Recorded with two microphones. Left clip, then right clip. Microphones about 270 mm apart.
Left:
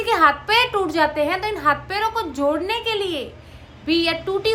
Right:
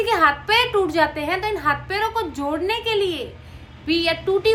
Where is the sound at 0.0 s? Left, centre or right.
Centre.